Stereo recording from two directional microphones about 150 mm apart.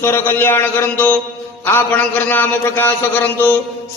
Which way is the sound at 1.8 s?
10° left (ahead or behind).